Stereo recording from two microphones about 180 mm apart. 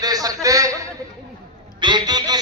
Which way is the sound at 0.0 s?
20° right (ahead or behind).